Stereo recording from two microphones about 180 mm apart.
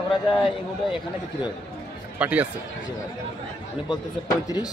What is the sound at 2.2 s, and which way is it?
Speech, 10° right (ahead or behind).